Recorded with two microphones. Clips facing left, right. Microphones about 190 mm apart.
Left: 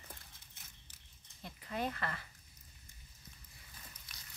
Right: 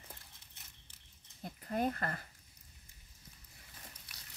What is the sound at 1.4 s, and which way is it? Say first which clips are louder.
Speech: right 4 dB; 45° right (ahead or behind).